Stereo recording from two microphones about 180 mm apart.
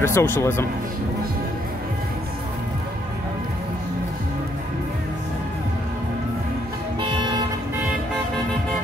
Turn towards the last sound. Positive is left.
turn(degrees=-25)  # may be behind; listen again after turning